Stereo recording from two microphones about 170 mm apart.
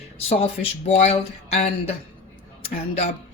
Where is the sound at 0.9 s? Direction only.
40° left (ahead or behind).